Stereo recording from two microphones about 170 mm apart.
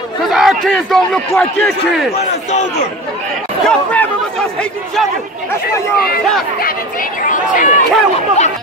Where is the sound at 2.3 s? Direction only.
45° left (ahead or behind).